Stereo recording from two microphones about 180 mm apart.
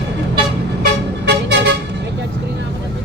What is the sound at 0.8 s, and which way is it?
Vehicle, 75° right (ahead or behind).